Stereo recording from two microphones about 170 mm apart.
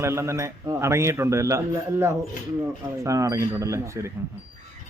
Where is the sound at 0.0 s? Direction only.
15° right (ahead or behind).